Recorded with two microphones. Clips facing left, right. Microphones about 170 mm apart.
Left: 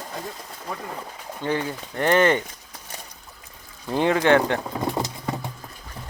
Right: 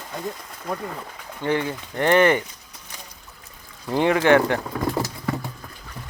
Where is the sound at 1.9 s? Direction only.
20° right (ahead or behind).